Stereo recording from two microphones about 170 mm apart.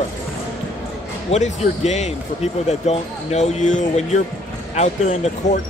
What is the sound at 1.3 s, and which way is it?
Speech, 45° left (ahead or behind).